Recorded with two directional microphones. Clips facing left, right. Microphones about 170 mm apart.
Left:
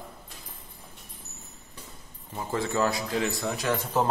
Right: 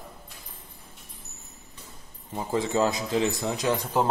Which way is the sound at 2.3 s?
15° right (ahead or behind).